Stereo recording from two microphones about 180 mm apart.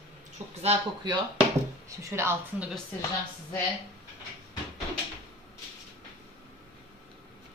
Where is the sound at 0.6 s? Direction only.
25° right (ahead or behind).